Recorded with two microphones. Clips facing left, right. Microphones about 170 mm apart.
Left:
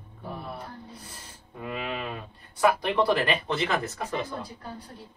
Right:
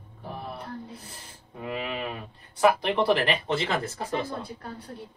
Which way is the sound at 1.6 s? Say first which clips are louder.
Right 1 dB; 25° right (ahead or behind).